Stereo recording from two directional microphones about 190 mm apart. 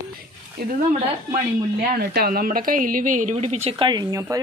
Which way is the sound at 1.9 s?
55° right (ahead or behind).